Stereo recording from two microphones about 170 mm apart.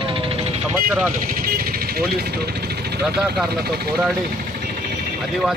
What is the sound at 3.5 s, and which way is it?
Speech, 70° right (ahead or behind).